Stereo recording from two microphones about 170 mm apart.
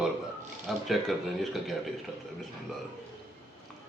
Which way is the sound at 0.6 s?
Centre (ahead or behind).